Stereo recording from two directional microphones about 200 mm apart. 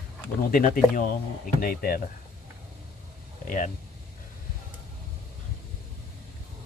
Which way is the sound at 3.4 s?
40° left (ahead or behind).